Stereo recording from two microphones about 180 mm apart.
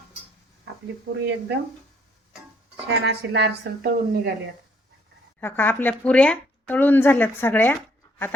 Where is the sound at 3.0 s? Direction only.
70° right (ahead or behind).